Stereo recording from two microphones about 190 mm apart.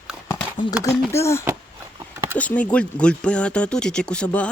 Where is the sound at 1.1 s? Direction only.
15° left (ahead or behind).